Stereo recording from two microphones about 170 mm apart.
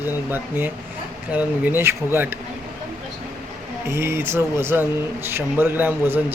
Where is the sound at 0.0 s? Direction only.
10° right (ahead or behind).